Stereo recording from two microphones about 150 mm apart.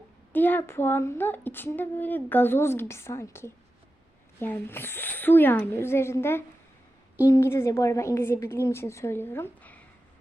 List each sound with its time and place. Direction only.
0.3 s speech: 10° left (ahead or behind)